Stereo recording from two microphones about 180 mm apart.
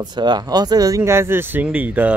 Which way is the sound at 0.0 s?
25° right (ahead or behind).